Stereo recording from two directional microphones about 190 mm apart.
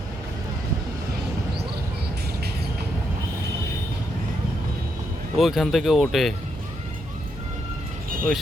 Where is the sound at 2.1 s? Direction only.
60° right (ahead or behind).